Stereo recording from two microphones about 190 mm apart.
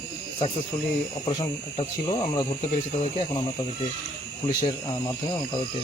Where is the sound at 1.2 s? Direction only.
30° left (ahead or behind).